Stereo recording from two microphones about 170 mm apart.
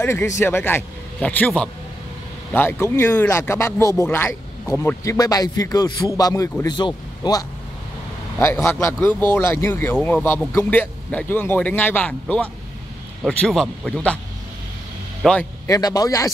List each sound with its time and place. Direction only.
0.0 s a man's voice: 15° left (ahead or behind)
15.2 s speech: centre (ahead or behind)
15.6 s a man's voice: 20° left (ahead or behind)